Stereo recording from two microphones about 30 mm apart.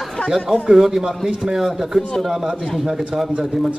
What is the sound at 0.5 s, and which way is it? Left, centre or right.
A man's voice, centre.